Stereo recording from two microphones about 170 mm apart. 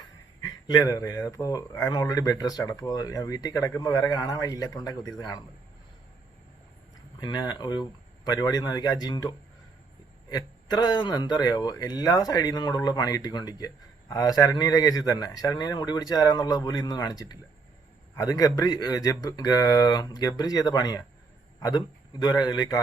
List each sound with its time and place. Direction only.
0.0 s speech: 25° left (ahead or behind)
7.2 s a man's voice: 25° left (ahead or behind)